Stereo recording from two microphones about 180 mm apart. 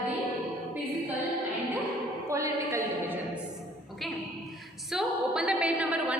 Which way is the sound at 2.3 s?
15° right (ahead or behind).